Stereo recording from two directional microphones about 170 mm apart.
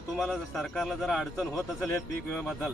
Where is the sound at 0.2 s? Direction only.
Centre (ahead or behind).